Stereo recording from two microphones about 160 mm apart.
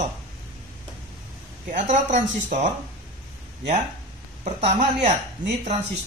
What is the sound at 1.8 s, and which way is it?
Speech, 50° right (ahead or behind).